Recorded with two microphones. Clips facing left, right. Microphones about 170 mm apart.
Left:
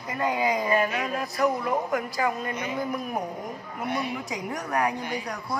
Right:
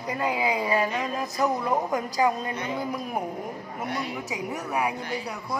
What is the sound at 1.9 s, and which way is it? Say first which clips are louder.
Speech: right 2 dB; 20° right (ahead or behind).